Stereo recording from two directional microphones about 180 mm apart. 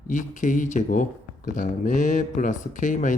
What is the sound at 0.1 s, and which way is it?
Speech, 45° left (ahead or behind).